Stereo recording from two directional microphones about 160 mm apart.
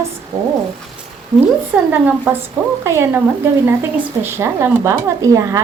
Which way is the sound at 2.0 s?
10° right (ahead or behind).